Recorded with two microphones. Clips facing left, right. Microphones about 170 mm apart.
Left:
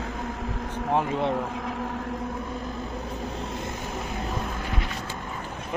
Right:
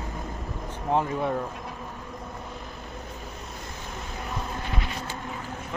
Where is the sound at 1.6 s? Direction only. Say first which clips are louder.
Left 7 dB; 80° left.